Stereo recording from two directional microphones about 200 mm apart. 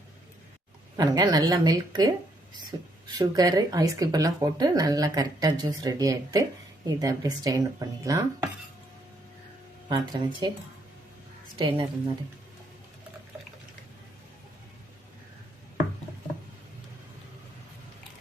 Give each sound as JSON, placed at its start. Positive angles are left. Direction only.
{"t": 0.9, "sound": "speech", "side_deg": -20}
{"t": 9.9, "sound": "speech", "side_deg": -20}
{"t": 11.5, "sound": "speech", "side_deg": -25}